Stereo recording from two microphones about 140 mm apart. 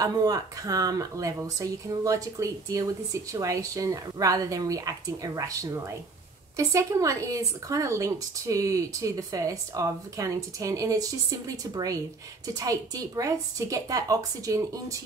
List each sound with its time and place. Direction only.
0.0 s speech: 25° right (ahead or behind)